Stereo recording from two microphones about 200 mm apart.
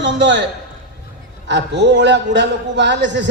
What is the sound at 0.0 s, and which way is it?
Speech, 65° right (ahead or behind).